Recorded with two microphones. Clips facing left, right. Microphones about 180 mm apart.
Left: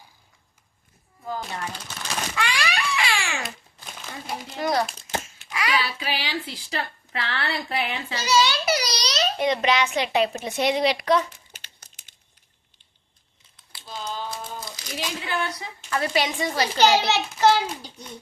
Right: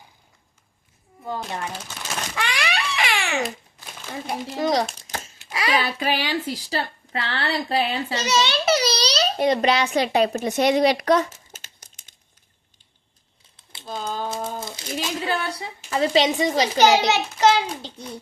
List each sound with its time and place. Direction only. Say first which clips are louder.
2.3 s a sound: right 1 dB; 20° right (ahead or behind)
4.6 s a child's voice: right 2 dB; 15° right (ahead or behind)
5.2 s a sound: right 2 dB; 35° right (ahead or behind)
5.8 s a woman's voice: right 5 dB; 50° right (ahead or behind)
13.8 s crumpling: right 4 dB; 50° right (ahead or behind)
14.3 s crumpling: right 6 dB; 25° right (ahead or behind)
14.9 s a woman's voice: right 3 dB; 40° right (ahead or behind); by 17.9 s 20° right (ahead or behind)